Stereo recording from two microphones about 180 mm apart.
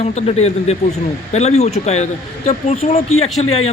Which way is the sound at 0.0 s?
40° left (ahead or behind).